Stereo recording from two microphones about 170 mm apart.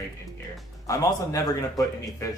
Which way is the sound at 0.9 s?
20° left (ahead or behind).